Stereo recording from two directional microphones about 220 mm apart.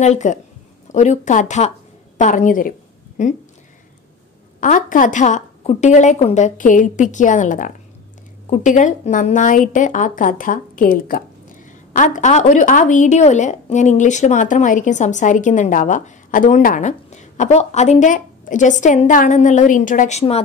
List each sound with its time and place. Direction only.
0.0 s a woman's voice: 30° left (ahead or behind)
4.6 s a woman's voice: 35° left (ahead or behind)